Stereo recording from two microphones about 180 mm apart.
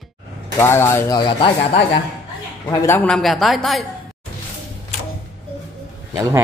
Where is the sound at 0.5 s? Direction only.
15° left (ahead or behind).